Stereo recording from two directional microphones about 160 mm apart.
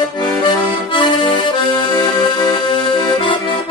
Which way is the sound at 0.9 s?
30° left (ahead or behind).